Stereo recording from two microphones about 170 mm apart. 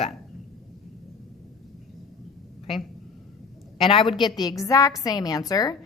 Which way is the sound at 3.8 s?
30° left (ahead or behind).